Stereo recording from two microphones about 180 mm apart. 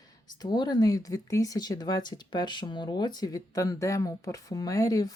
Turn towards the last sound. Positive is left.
turn(degrees=20)  # may be behind; listen again after turning